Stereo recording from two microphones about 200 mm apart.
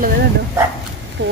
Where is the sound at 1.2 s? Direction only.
60° right (ahead or behind).